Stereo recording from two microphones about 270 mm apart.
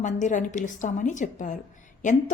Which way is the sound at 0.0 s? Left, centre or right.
Left.